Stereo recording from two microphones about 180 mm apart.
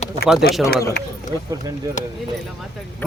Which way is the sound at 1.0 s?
60° left (ahead or behind).